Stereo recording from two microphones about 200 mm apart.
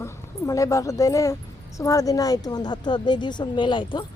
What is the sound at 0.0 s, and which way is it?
A woman's voice, 15° left (ahead or behind).